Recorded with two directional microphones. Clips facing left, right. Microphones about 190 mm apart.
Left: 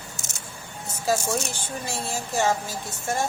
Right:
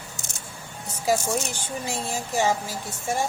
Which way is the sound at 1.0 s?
15° right (ahead or behind).